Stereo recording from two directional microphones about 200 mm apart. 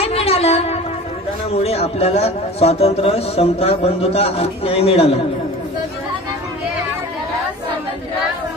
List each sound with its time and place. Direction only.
0.0 s music: 30° left (ahead or behind)
1.5 s a man's voice: 30° left (ahead or behind)